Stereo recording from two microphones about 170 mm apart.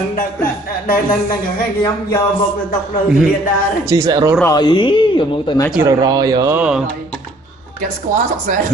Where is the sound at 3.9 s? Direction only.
20° right (ahead or behind).